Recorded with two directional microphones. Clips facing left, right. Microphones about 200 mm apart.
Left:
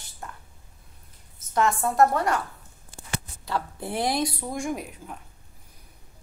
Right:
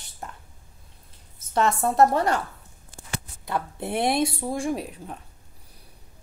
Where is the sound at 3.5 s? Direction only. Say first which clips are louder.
Right 2 dB; 25° right (ahead or behind).